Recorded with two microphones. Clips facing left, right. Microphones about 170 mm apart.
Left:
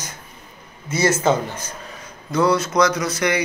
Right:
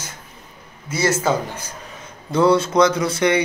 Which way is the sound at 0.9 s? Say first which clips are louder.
Left 1 dB; 15° left (ahead or behind).